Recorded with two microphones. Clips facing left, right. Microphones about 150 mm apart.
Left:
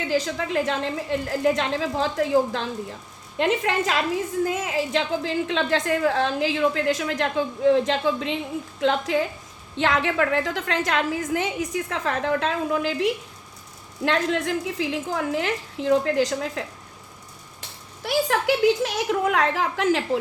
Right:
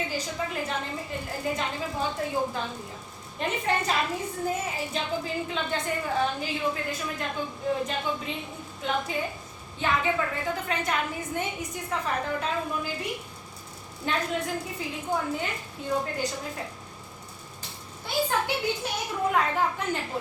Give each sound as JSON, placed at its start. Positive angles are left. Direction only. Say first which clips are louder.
{"t": 0.1, "sound": "a woman's voice", "louder": "left 8 dB", "side_deg": 90}
{"t": 18.0, "sound": "a woman's voice", "louder": "left 5 dB", "side_deg": 90}